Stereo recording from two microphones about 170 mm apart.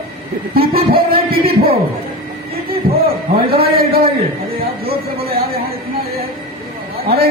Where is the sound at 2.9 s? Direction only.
65° right (ahead or behind).